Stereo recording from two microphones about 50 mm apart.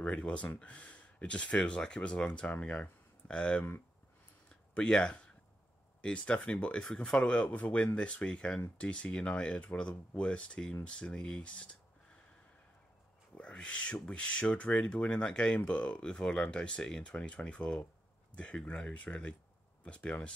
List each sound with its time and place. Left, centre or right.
0.0 s speech: left
4.7 s speech: centre
13.4 s speech: left